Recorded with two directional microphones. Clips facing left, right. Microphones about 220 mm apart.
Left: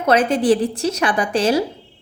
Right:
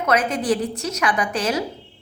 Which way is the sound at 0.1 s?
30° left (ahead or behind).